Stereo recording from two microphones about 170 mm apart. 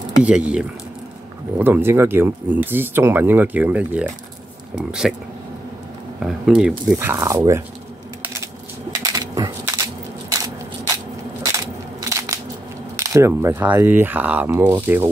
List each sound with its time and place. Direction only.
0.2 s speech: 5° right (ahead or behind)
6.1 s speech: centre (ahead or behind)
7.0 s speech: 15° right (ahead or behind)
8.9 s coin: 20° right (ahead or behind)
11.4 s crushing: 20° right (ahead or behind)
12.9 s speech: 15° right (ahead or behind)